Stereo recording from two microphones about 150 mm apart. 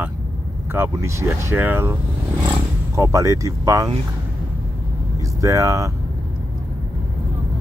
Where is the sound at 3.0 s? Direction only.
20° right (ahead or behind).